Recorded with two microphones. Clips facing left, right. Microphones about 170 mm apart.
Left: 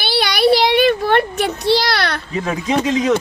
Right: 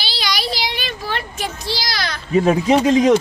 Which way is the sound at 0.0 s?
60° left (ahead or behind).